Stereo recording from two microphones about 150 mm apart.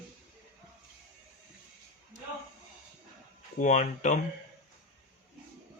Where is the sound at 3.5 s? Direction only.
55° left (ahead or behind).